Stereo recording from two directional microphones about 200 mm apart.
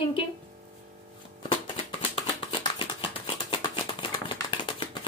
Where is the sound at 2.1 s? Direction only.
25° left (ahead or behind).